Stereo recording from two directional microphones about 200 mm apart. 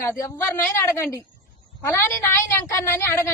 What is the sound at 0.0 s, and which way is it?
A woman's voice, 10° left (ahead or behind).